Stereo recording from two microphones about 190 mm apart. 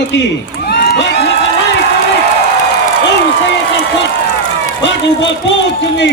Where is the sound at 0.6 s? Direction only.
55° left (ahead or behind).